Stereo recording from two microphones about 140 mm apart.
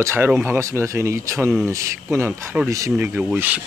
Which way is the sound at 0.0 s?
15° right (ahead or behind).